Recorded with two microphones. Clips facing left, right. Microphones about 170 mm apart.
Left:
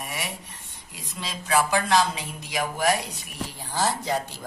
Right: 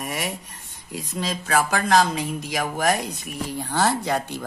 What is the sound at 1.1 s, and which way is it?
Speech, 45° right (ahead or behind).